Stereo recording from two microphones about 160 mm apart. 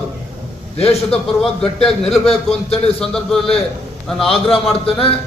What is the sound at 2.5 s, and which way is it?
Speech, 40° left (ahead or behind).